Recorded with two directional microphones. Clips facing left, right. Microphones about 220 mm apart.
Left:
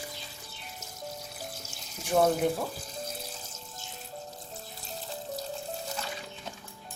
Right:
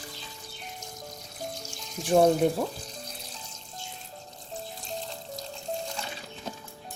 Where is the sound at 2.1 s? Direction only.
30° right (ahead or behind).